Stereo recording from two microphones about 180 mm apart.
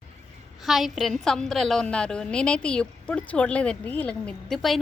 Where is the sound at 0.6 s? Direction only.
Centre (ahead or behind).